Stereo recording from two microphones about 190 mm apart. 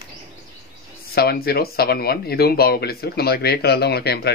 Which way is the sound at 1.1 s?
55° left (ahead or behind).